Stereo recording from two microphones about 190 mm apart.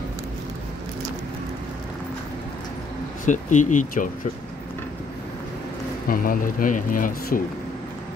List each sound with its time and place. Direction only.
3.3 s speech: 40° left (ahead or behind)
6.0 s speech: 50° left (ahead or behind)